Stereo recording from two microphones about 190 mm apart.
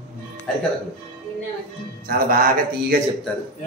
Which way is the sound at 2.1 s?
45° right (ahead or behind).